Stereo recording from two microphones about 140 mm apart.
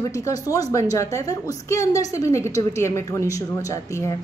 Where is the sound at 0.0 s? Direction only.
25° left (ahead or behind).